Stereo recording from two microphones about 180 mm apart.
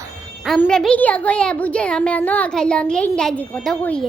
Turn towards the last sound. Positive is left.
turn(degrees=5)  # may be behind; listen again after turning